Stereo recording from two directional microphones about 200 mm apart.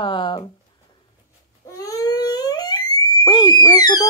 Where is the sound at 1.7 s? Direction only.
15° left (ahead or behind).